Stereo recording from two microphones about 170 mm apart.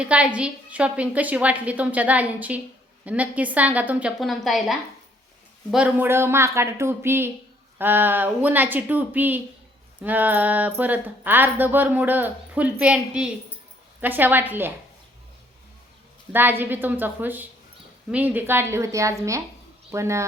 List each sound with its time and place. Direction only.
0.0 s speech: 5° right (ahead or behind)
16.3 s speech: 10° right (ahead or behind)